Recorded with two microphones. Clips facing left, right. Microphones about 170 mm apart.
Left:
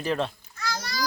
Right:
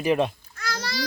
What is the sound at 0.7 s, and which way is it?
Children playing, 75° right (ahead or behind).